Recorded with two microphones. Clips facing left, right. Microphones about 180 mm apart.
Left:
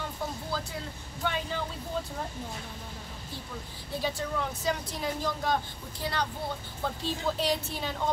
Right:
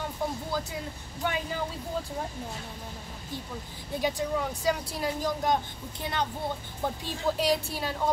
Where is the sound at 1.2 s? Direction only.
10° right (ahead or behind).